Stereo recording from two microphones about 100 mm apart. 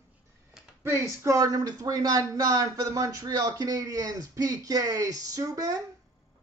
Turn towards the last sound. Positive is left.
turn(degrees=-35)  # may be behind; listen again after turning